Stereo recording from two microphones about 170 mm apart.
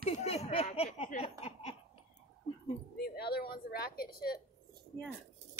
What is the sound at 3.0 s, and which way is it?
A woman's voice, 70° left (ahead or behind).